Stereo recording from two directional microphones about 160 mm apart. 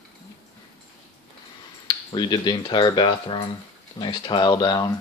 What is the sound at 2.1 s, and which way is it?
Speech, 30° left (ahead or behind).